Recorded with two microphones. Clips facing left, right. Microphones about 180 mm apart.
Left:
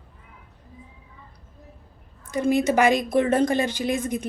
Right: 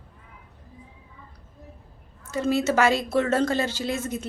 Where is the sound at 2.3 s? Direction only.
15° left (ahead or behind).